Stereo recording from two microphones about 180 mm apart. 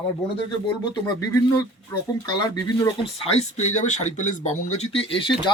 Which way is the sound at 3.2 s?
35° left (ahead or behind).